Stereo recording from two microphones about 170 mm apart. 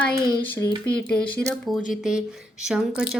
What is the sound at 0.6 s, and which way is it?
Speech, 20° left (ahead or behind).